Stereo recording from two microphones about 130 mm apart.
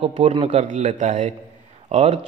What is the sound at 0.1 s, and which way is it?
Speech, 45° right (ahead or behind).